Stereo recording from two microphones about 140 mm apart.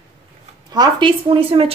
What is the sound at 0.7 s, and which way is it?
A woman's voice, 30° right (ahead or behind).